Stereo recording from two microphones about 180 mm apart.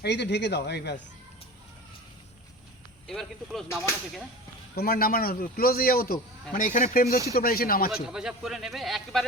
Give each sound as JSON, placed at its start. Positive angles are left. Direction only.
{"t": 0.0, "sound": "speech", "side_deg": 70}
{"t": 3.1, "sound": "a man's voice", "side_deg": 0}
{"t": 4.7, "sound": "speech", "side_deg": 55}
{"t": 8.0, "sound": "a man's voice", "side_deg": -5}